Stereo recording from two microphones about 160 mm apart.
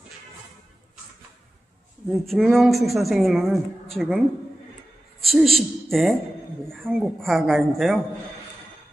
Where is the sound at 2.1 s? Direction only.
Centre (ahead or behind).